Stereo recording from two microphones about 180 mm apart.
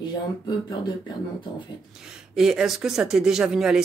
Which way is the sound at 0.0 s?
25° left (ahead or behind).